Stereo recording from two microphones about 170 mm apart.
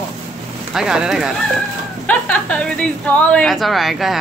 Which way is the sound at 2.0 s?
10° left (ahead or behind).